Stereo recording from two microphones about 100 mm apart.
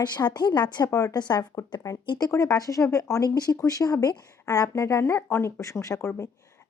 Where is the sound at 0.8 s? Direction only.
35° left (ahead or behind).